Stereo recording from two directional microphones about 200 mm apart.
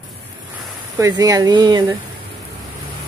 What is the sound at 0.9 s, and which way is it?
Speech, 15° right (ahead or behind).